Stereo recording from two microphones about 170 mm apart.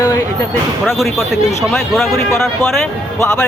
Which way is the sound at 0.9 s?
Centre (ahead or behind).